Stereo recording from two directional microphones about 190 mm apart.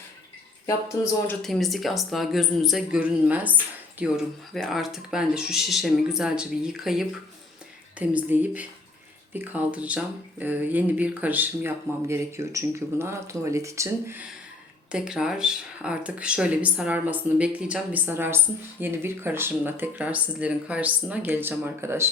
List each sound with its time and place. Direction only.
0.9 s speech: 15° left (ahead or behind)
1.3 s speech: centre (ahead or behind)